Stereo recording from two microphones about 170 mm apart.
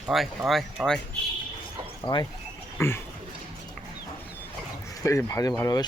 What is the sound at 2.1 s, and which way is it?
Speech, 25° left (ahead or behind).